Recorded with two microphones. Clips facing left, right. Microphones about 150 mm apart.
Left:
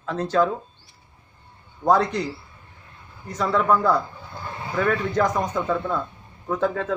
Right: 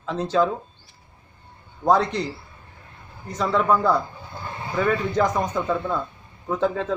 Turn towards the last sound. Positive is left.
turn(degrees=0)  # may be behind; listen again after turning